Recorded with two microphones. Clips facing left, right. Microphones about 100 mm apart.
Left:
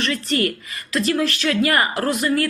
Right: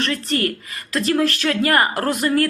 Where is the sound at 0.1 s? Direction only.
40° right (ahead or behind).